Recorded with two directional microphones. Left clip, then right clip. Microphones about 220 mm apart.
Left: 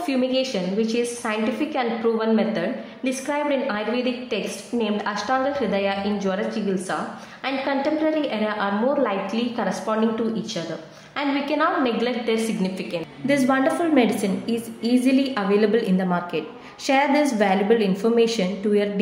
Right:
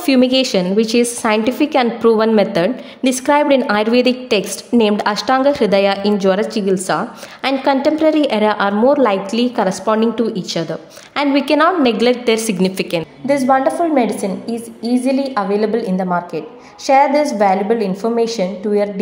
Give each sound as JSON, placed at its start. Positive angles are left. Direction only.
{"t": 0.0, "sound": "a woman's voice", "side_deg": -45}
{"t": 13.3, "sound": "a woman's voice", "side_deg": -15}